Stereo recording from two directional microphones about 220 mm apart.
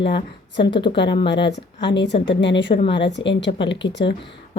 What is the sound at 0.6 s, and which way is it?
Speech, 20° left (ahead or behind).